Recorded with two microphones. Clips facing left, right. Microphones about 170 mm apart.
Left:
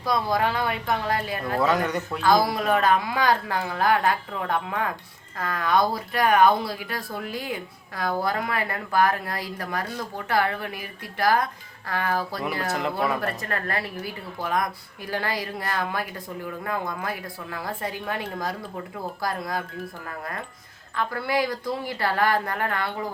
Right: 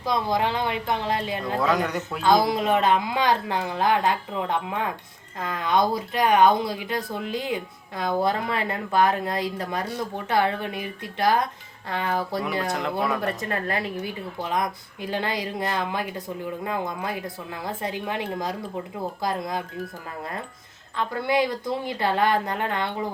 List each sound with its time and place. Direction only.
0.0 s a woman's voice: 20° right (ahead or behind)
1.6 s speech: centre (ahead or behind)
2.2 s a woman's voice: 20° right (ahead or behind)
12.6 s speech: centre (ahead or behind)
13.2 s a woman's voice: 20° right (ahead or behind)
20.9 s a woman's voice: 20° right (ahead or behind)